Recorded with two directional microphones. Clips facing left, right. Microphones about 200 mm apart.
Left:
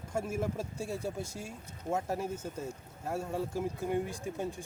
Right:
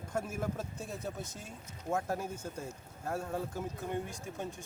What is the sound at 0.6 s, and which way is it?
Speech, 30° left (ahead or behind).